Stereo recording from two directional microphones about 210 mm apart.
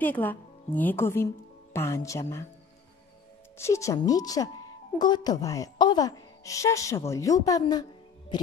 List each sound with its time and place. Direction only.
0.0 s speech: 10° left (ahead or behind)
3.5 s a woman's voice: 15° left (ahead or behind)